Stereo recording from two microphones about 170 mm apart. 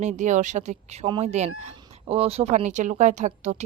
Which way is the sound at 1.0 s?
35° right (ahead or behind).